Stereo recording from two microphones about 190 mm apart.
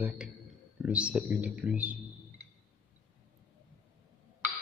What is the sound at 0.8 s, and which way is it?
Speech, 5° right (ahead or behind).